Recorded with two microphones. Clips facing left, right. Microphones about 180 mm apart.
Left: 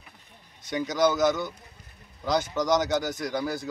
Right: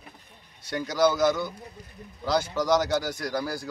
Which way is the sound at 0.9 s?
20° left (ahead or behind).